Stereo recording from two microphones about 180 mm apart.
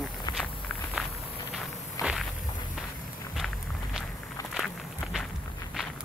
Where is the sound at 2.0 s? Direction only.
20° left (ahead or behind).